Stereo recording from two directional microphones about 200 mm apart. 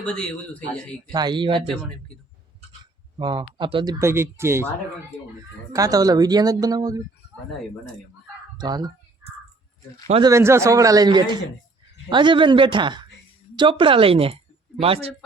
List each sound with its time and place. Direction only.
0.0 s speech: 5° left (ahead or behind)
1.1 s speech: 20° right (ahead or behind)
1.6 s speech: centre (ahead or behind)
3.2 s speech: 25° right (ahead or behind)
5.7 s speech: 15° right (ahead or behind)
8.5 s speech: 20° right (ahead or behind)
10.1 s speech: 25° right (ahead or behind)
10.3 s a woman's voice: 15° right (ahead or behind); by 15.1 s 30° right (ahead or behind)